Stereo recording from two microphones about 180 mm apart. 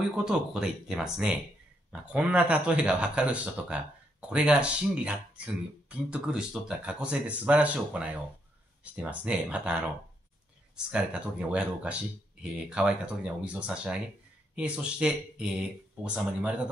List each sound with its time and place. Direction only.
0.0 s speech: 5° right (ahead or behind)
10.9 s speech: 5° right (ahead or behind)